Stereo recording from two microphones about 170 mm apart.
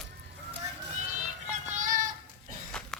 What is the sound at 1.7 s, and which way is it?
Synthetic singing, 50° right (ahead or behind).